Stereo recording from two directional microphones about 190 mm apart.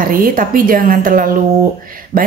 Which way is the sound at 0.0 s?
50° right (ahead or behind).